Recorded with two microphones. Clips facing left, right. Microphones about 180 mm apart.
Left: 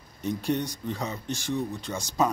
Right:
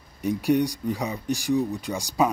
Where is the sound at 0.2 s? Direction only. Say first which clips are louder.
Right 6 dB; 15° right (ahead or behind).